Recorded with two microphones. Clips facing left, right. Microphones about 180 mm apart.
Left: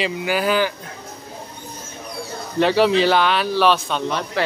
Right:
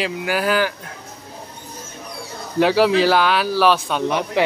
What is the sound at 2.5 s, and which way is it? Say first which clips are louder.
Speech: right 1 dB; 5° right (ahead or behind).